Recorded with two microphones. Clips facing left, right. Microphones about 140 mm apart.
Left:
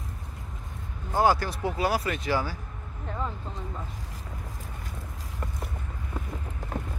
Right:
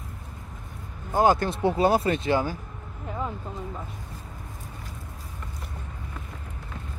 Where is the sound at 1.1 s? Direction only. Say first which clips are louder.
Right 2 dB; 20° right (ahead or behind).